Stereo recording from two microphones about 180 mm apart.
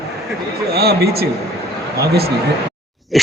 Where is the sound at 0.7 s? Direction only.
60° right (ahead or behind).